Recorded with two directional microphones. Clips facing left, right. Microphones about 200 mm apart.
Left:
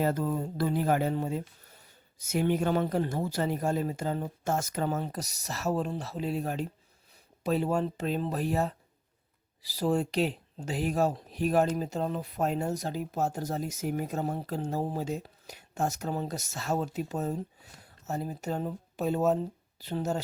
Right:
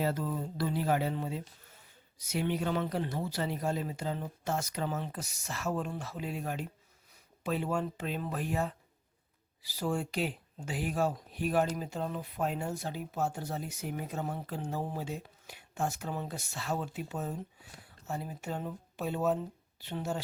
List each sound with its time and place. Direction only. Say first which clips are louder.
0.0 s speech: left 4 dB; 50° left (ahead or behind)